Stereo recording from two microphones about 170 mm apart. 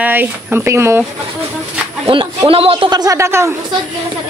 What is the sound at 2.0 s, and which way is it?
A woman's voice, 30° right (ahead or behind).